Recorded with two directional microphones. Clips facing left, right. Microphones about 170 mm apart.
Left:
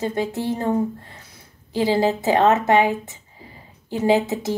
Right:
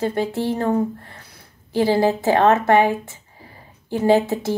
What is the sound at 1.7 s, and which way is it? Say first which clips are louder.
Speech: right 2 dB; 15° left (ahead or behind).